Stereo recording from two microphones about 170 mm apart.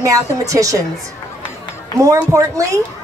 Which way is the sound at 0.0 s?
20° right (ahead or behind).